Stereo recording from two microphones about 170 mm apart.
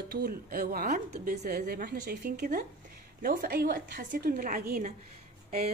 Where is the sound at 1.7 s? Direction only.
65° right (ahead or behind).